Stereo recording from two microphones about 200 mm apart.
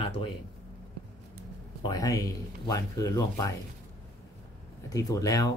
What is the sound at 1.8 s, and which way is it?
Speech, 20° left (ahead or behind).